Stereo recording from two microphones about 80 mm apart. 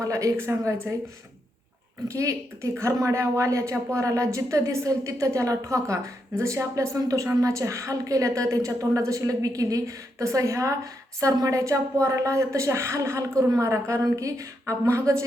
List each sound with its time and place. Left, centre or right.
0.0 s a woman's voice: right
2.0 s a woman's voice: right